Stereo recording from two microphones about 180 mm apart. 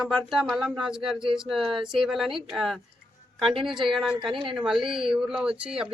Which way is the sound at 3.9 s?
Centre (ahead or behind).